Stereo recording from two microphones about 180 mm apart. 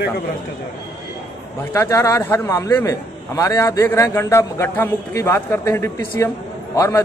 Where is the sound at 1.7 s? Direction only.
15° left (ahead or behind).